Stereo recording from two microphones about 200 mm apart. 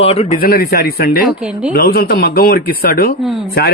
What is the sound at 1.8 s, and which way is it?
Speech, 50° left (ahead or behind).